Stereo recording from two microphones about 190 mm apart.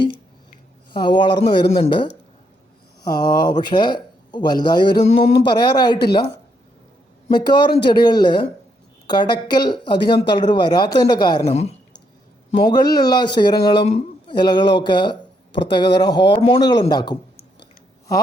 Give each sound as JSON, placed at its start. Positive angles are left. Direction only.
{"t": 0.9, "sound": "speech", "side_deg": 25}
{"t": 7.3, "sound": "speech", "side_deg": 25}
{"t": 12.6, "sound": "speech", "side_deg": 20}
{"t": 13.8, "sound": "a sound", "side_deg": 35}
{"t": 14.3, "sound": "speech", "side_deg": 20}